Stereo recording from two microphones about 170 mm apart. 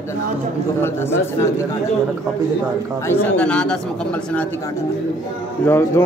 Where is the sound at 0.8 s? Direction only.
15° left (ahead or behind).